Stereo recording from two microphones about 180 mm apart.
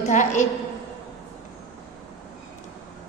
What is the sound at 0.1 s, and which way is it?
Speech, 40° left (ahead or behind).